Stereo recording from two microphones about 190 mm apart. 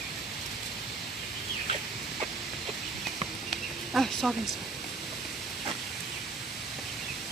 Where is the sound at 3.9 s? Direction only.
Centre (ahead or behind).